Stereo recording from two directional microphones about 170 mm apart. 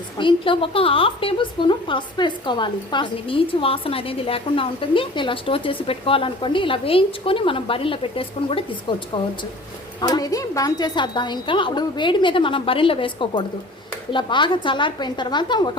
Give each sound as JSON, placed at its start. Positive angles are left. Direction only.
{"t": 0.2, "sound": "a woman's voice", "side_deg": 30}
{"t": 10.0, "sound": "a woman's voice", "side_deg": 25}